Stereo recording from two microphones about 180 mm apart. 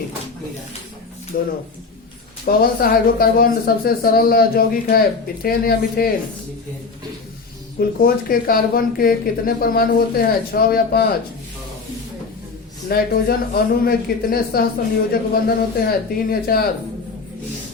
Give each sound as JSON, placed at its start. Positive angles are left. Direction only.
{"t": 1.3, "sound": "speech", "side_deg": 55}
{"t": 7.8, "sound": "speech", "side_deg": 55}
{"t": 12.9, "sound": "speech", "side_deg": 55}